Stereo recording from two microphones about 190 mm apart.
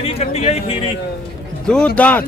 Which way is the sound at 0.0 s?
35° left (ahead or behind).